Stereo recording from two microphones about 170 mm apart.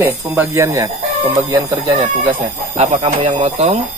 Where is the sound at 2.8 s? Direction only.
40° right (ahead or behind).